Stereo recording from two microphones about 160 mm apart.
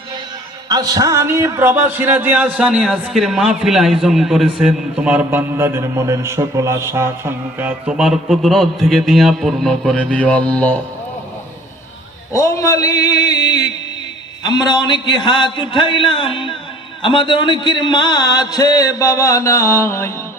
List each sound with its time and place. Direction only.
0.7 s a man's voice: 25° right (ahead or behind); by 10.8 s 10° left (ahead or behind)
12.3 s a man's voice: 20° left (ahead or behind)